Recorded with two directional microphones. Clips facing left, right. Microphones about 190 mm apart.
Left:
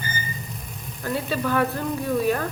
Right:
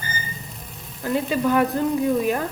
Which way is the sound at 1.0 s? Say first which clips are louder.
Right 4 dB; 15° right (ahead or behind).